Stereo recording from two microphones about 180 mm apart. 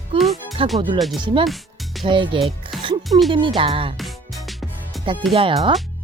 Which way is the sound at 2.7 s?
Centre (ahead or behind).